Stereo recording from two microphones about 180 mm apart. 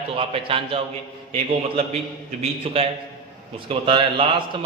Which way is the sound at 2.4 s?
30° right (ahead or behind).